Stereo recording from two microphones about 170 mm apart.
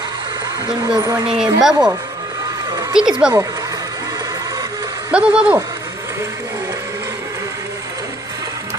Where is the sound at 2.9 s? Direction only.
5° right (ahead or behind).